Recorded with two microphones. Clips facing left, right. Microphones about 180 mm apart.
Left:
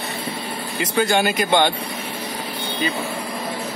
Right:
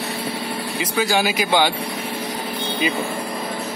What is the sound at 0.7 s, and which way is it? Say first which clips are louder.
Speech: left 2 dB; centre (ahead or behind).